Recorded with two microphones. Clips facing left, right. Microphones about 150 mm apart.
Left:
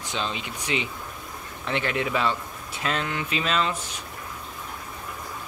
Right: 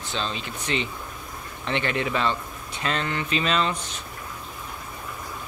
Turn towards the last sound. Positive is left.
turn(degrees=10)  # may be behind; listen again after turning